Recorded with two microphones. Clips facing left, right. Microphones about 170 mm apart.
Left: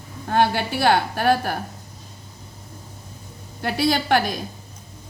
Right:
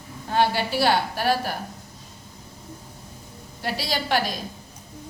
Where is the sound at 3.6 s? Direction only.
55° left (ahead or behind).